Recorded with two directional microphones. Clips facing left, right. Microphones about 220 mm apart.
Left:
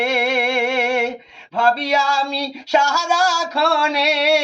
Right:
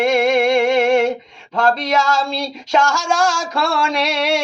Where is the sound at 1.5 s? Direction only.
10° left (ahead or behind).